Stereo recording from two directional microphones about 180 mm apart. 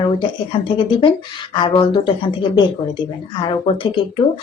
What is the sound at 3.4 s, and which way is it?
Speech, 30° left (ahead or behind).